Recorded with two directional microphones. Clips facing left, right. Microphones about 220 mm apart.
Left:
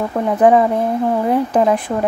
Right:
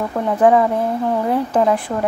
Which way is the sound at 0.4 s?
20° left (ahead or behind).